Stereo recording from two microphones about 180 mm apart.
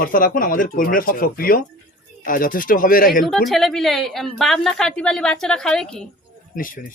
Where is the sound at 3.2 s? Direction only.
Centre (ahead or behind).